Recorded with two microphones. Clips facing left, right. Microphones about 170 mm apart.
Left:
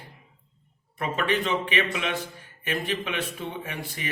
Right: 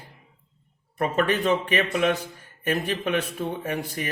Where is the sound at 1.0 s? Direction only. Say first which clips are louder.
Right 4 dB; 45° right (ahead or behind).